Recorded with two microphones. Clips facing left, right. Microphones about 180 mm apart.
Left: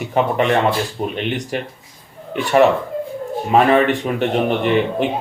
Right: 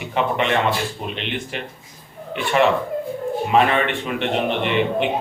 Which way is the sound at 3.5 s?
45° left (ahead or behind).